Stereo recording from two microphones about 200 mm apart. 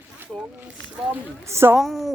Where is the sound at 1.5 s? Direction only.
10° right (ahead or behind).